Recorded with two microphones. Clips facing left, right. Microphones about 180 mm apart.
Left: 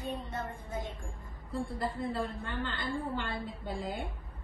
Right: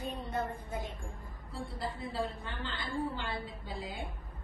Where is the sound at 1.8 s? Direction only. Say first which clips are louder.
Even; 55° left (ahead or behind).